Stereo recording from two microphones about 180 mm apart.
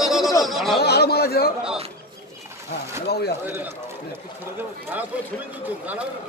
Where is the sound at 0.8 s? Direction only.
65° left (ahead or behind).